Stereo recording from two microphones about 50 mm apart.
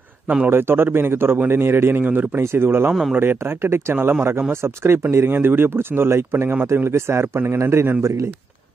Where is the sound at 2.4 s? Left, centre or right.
Right.